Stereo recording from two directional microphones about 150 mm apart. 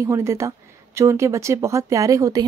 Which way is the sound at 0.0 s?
20° right (ahead or behind).